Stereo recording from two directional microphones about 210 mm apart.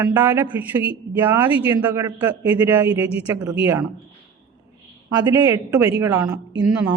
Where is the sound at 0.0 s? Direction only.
10° right (ahead or behind).